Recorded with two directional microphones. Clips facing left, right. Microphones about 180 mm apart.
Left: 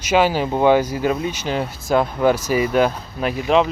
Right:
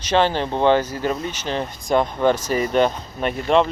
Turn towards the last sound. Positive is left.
turn(degrees=5)  # may be behind; listen again after turning